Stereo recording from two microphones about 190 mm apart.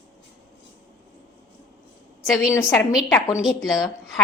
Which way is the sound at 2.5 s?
15° left (ahead or behind).